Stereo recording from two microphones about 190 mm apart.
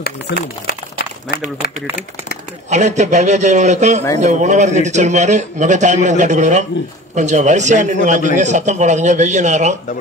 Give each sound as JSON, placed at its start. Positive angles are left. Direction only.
{"t": 0.0, "sound": "speech", "side_deg": 55}
{"t": 2.7, "sound": "a man's voice", "side_deg": -40}